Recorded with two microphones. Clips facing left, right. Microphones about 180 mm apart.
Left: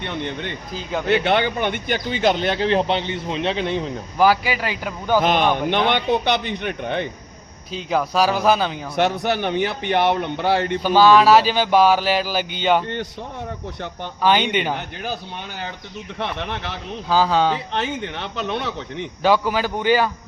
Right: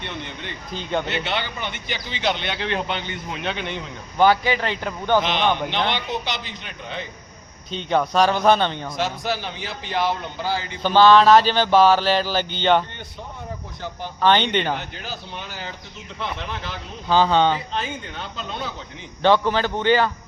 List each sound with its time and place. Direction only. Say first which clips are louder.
0.7 s speech: right 3 dB; centre (ahead or behind)
1.0 s speech: left 8 dB; 55° left (ahead or behind); by 3.9 s 35° left (ahead or behind)
4.2 s speech: even; 5° left (ahead or behind)
5.2 s a man's voice: left 4 dB; 50° left (ahead or behind)
7.7 s speech: right 1 dB; 5° left (ahead or behind)
9.0 s a man's voice: left 7 dB; 65° left (ahead or behind)
10.8 s speech: even; 10° left (ahead or behind)
14.2 s speech: even; 10° left (ahead or behind)
16.1 s speech: left 3 dB; 65° left (ahead or behind)
17.1 s speech: even; 5° left (ahead or behind)
17.7 s speech: left 4 dB; 70° left (ahead or behind)
19.2 s speech: right 1 dB; 10° left (ahead or behind)